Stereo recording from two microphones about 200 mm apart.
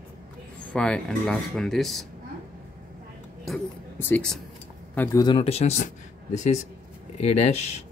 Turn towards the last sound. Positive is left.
turn(degrees=35)  # may be behind; listen again after turning